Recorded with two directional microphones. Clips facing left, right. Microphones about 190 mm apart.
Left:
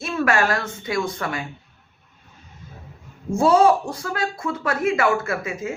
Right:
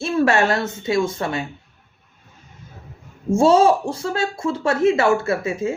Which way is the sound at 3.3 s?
25° right (ahead or behind).